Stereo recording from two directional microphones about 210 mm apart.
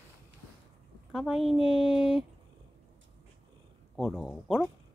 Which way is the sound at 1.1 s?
Centre (ahead or behind).